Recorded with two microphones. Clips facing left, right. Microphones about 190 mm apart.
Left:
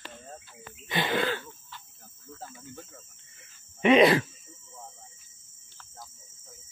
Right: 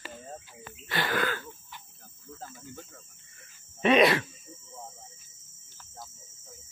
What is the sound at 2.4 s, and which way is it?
Speech, 5° left (ahead or behind).